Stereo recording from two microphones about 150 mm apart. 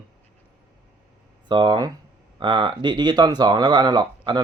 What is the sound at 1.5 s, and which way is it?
Speech, 30° right (ahead or behind).